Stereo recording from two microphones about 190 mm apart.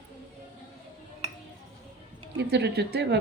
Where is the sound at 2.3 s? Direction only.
60° right (ahead or behind).